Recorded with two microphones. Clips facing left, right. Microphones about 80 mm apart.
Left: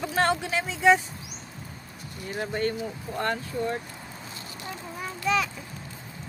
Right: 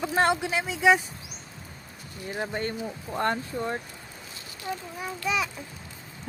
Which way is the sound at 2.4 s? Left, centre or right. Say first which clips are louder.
Left 3 dB; right.